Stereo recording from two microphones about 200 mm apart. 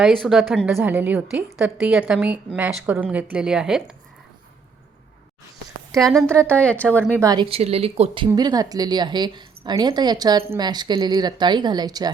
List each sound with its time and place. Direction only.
0.0 s a woman's voice: centre (ahead or behind)
6.0 s a woman's voice: centre (ahead or behind)
7.2 s a woman's voice: 20° right (ahead or behind)